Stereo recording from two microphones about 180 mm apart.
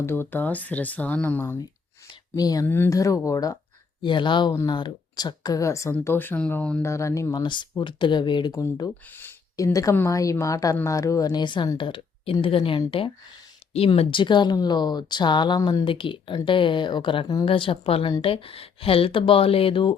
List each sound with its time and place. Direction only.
0.0 s speech: 10° left (ahead or behind)
8.5 s speech: 15° left (ahead or behind); by 19.9 s 30° left (ahead or behind)